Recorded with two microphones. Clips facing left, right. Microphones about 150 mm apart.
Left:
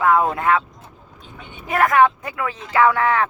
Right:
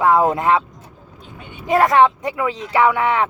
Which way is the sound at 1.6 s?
20° right (ahead or behind).